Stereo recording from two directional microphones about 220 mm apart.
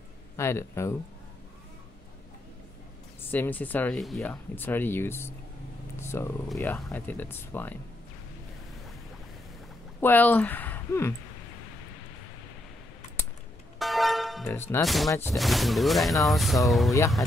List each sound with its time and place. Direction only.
0.4 s speech: 10° left (ahead or behind)
3.3 s speech: 10° left (ahead or behind)
9.9 s speech: 10° left (ahead or behind)
13.7 s music: centre (ahead or behind)
15.0 s speech: 10° left (ahead or behind)
15.3 s speech: centre (ahead or behind)